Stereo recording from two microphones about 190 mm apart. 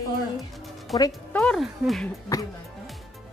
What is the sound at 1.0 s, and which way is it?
Speech, 20° left (ahead or behind).